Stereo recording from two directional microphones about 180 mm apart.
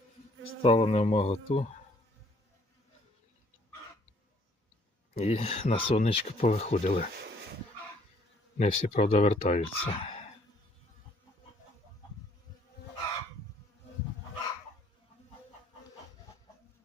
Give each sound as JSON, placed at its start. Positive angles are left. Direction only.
{"t": 0.6, "sound": "speech", "side_deg": 35}
{"t": 5.1, "sound": "speech", "side_deg": 35}
{"t": 8.5, "sound": "speech", "side_deg": 35}